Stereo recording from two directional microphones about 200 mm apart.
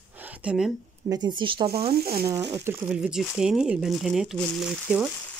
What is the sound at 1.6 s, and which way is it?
Speech, 50° right (ahead or behind).